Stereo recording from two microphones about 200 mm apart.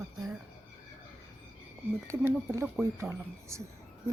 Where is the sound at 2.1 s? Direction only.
15° right (ahead or behind).